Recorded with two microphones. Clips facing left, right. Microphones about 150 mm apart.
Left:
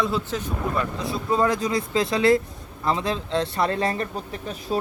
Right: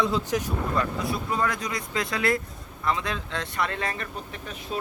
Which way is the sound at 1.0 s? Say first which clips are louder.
Left 4 dB; 25° left (ahead or behind).